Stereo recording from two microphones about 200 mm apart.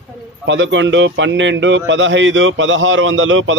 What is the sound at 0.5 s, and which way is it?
Speech, 65° right (ahead or behind).